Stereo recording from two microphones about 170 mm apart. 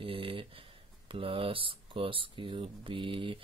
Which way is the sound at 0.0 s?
30° right (ahead or behind).